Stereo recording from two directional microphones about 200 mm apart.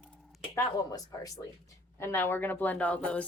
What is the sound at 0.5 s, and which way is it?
Speech, 15° left (ahead or behind).